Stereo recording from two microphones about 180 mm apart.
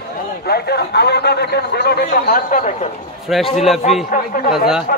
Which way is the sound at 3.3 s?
Centre (ahead or behind).